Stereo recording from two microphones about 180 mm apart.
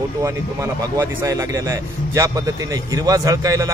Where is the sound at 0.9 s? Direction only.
15° right (ahead or behind).